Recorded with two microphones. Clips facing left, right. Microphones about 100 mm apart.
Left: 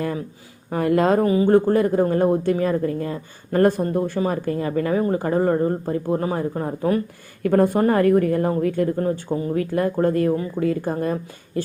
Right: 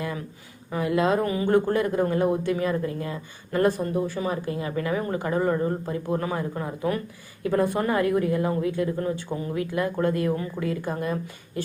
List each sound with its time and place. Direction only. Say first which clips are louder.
0.7 s speech: left 5 dB; 50° left (ahead or behind)
1.2 s speech: left 6 dB; 30° left (ahead or behind)
7.4 s speech: left 6 dB; 50° left (ahead or behind)